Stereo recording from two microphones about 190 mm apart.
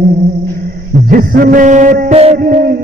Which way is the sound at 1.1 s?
50° right (ahead or behind).